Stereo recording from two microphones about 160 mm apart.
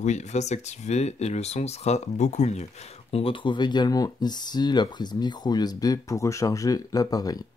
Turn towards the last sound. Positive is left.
turn(degrees=25)  # may be behind; listen again after turning